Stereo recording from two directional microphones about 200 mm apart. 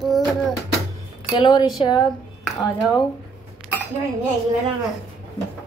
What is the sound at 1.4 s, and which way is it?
Speech, 20° left (ahead or behind).